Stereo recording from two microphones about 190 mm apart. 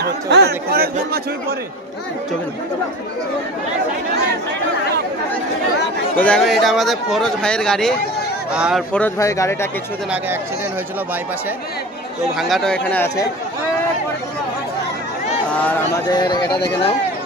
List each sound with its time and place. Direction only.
0.0 s speech: 60° right (ahead or behind)
6.1 s speech: 5° left (ahead or behind)
8.9 s speech: 10° left (ahead or behind)
12.4 s speech: centre (ahead or behind)
16.1 s speech: 20° left (ahead or behind)